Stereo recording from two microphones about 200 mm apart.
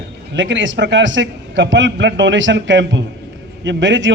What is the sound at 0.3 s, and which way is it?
A man's voice, 65° right (ahead or behind).